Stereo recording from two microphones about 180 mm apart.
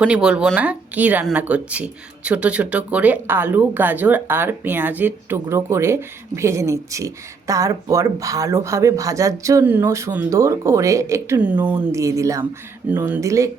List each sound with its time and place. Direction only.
0.0 s speech: 5° right (ahead or behind)